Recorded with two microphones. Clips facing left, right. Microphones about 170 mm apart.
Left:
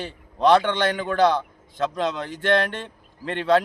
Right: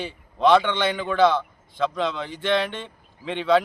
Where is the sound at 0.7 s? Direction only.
40° left (ahead or behind).